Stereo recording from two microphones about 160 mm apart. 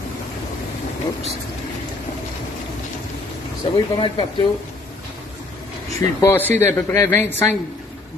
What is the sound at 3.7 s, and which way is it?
Speech, 30° left (ahead or behind).